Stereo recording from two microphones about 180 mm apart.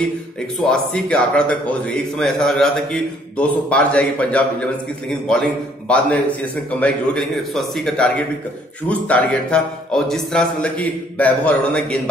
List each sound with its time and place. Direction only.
0.7 s a man's voice: 5° left (ahead or behind)
5.9 s a man's voice: 10° left (ahead or behind)